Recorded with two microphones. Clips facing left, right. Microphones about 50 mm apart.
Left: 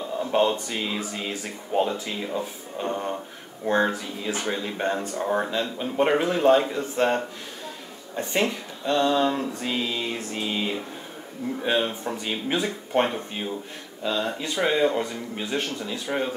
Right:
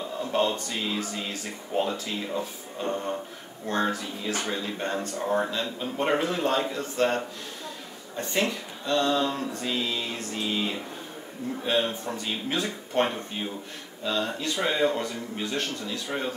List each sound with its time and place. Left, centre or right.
0.2 s speech: centre